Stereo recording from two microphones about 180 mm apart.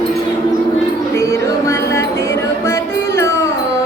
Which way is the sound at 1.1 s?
15° left (ahead or behind).